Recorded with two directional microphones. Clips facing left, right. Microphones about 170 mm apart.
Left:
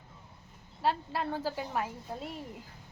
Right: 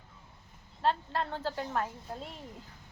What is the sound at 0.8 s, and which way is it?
Speech, 10° left (ahead or behind).